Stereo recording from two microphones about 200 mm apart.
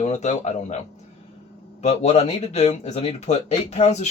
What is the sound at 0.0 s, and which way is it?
Speech, 35° left (ahead or behind).